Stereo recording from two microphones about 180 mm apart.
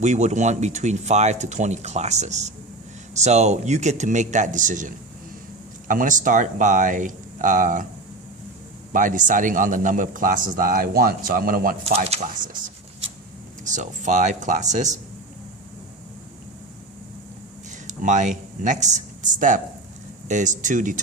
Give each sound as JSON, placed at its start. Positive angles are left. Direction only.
{"t": 0.0, "sound": "a man's voice", "side_deg": -40}
{"t": 8.9, "sound": "a man's voice", "side_deg": -45}
{"t": 11.9, "sound": "speech", "side_deg": -35}
{"t": 13.7, "sound": "a man's voice", "side_deg": -45}
{"t": 17.8, "sound": "a man's voice", "side_deg": -45}